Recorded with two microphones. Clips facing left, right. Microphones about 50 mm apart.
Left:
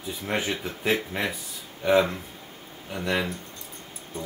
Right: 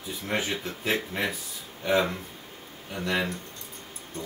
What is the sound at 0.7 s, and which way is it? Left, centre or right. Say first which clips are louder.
Speech: left 3 dB; centre.